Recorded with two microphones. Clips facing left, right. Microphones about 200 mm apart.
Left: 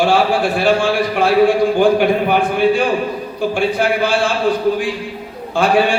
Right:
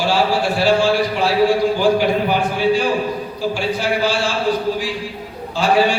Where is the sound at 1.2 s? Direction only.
55° left (ahead or behind).